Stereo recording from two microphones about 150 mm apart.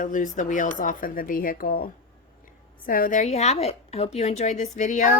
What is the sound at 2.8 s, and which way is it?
A woman's voice, 65° left (ahead or behind).